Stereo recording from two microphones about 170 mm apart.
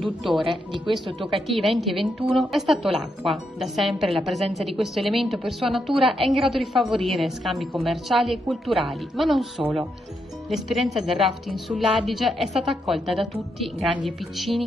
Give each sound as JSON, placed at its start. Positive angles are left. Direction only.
{"t": 0.0, "sound": "a woman's voice", "side_deg": 0}
{"t": 0.4, "sound": "speech", "side_deg": -30}
{"t": 1.3, "sound": "a woman's voice", "side_deg": 0}
{"t": 10.5, "sound": "a woman's voice", "side_deg": 0}